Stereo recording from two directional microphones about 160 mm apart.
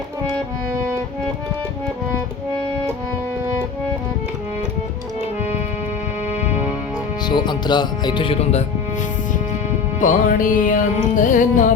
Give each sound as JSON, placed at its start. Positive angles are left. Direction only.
{"t": 0.7, "sound": "music", "side_deg": -15}
{"t": 7.3, "sound": "speech", "side_deg": 25}
{"t": 10.0, "sound": "music", "side_deg": 55}